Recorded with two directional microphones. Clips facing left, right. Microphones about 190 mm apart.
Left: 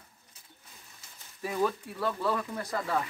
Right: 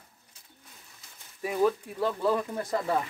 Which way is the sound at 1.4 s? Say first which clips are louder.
Right 4 dB; 15° right (ahead or behind).